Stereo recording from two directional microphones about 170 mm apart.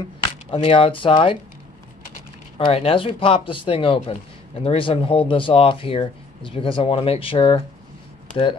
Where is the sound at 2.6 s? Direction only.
30° left (ahead or behind).